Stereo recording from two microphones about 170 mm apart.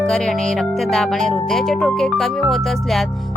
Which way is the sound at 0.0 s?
5° left (ahead or behind).